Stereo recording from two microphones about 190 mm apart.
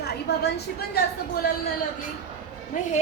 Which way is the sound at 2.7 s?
45° left (ahead or behind).